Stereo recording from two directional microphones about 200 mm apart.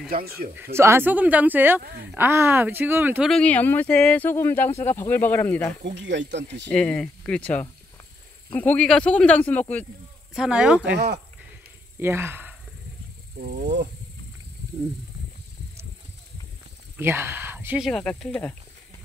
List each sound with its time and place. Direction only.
0.6 s speech: 10° right (ahead or behind)
1.8 s speech: 50° right (ahead or behind)
2.1 s speech: 10° right (ahead or behind)
3.3 s speech: 5° left (ahead or behind)
5.9 s speech: 60° right (ahead or behind)
6.7 s speech: 5° left (ahead or behind)
10.3 s speech: 5° right (ahead or behind)
10.9 s speech: 55° right (ahead or behind)
12.0 s speech: 10° right (ahead or behind)
13.4 s speech: 50° right (ahead or behind)
17.0 s speech: 10° right (ahead or behind); by 18.6 s 5° left (ahead or behind)